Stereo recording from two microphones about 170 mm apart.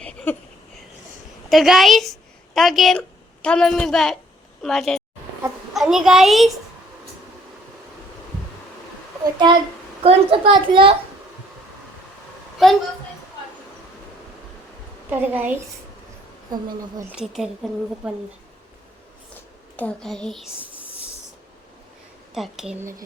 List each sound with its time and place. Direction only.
0.0 s a sound: 5° left (ahead or behind)
1.5 s a woman's voice: centre (ahead or behind)
10.0 s a child's voice: 35° right (ahead or behind)
12.6 s a woman's voice: centre (ahead or behind)
15.1 s a woman's voice: 10° right (ahead or behind)
17.2 s a woman's voice: centre (ahead or behind)
19.7 s a woman's voice: 5° left (ahead or behind)
22.4 s a woman's voice: centre (ahead or behind)
22.8 s a woman's voice: 15° right (ahead or behind)